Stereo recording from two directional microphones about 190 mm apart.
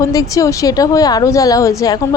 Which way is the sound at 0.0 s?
15° left (ahead or behind).